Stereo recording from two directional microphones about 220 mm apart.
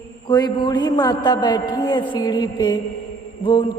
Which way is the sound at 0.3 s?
20° left (ahead or behind).